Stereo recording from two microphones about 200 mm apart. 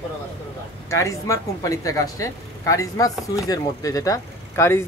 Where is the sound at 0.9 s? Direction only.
15° left (ahead or behind).